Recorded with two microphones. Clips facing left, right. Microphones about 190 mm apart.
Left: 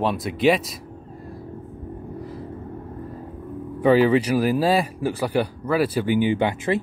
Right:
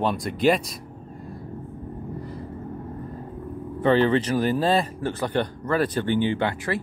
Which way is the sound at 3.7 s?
10° left (ahead or behind).